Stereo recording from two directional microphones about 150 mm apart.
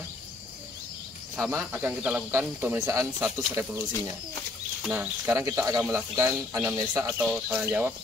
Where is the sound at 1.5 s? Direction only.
10° right (ahead or behind).